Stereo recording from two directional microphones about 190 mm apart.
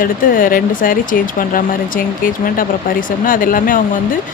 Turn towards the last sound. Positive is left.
turn(degrees=45)  # may be behind; listen again after turning